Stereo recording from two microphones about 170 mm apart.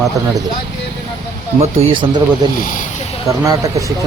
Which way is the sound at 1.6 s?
35° right (ahead or behind).